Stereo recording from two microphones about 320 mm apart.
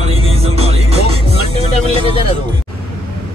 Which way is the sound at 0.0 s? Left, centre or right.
Centre.